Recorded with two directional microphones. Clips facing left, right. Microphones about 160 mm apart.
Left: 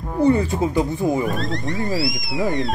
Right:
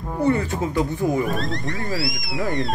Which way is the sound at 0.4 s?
25° left (ahead or behind).